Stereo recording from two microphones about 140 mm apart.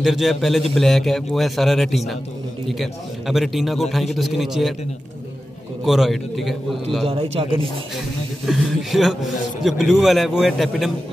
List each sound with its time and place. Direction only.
0.0 s a man's voice: centre (ahead or behind)
5.9 s a man's voice: centre (ahead or behind)
7.1 s a man's voice: 40° right (ahead or behind)
8.5 s a man's voice: centre (ahead or behind)